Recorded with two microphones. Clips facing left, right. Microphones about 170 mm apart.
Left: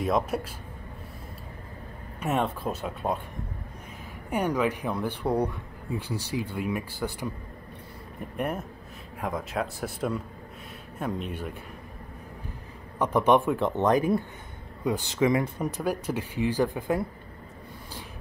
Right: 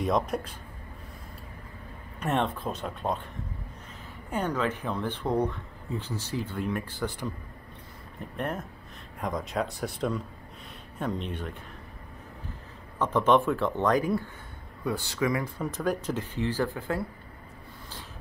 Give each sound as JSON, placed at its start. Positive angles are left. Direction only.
{"t": 0.0, "sound": "speech", "side_deg": 5}
{"t": 2.1, "sound": "speech", "side_deg": 5}
{"t": 4.3, "sound": "speech", "side_deg": 15}
{"t": 8.4, "sound": "speech", "side_deg": 10}
{"t": 13.0, "sound": "speech", "side_deg": 15}